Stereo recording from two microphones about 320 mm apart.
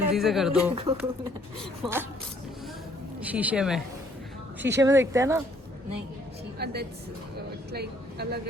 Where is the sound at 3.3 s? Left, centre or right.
Centre.